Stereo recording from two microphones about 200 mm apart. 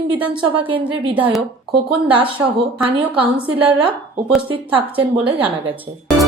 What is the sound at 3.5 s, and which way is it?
A woman's voice, 25° right (ahead or behind).